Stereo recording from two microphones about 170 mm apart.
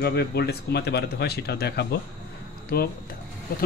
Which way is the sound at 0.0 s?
70° left (ahead or behind).